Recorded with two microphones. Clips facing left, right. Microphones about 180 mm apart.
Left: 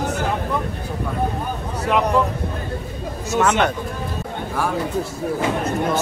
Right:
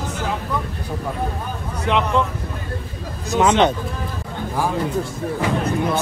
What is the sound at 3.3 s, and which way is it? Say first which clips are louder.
Speech: right 3 dB; 15° right (ahead or behind).